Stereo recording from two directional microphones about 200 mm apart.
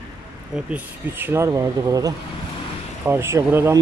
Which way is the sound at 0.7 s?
10° right (ahead or behind).